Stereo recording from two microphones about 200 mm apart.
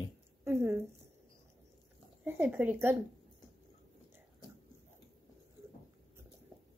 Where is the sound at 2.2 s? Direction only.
10° right (ahead or behind).